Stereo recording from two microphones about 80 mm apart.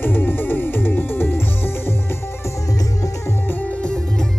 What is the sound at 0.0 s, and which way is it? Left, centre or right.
Music, left.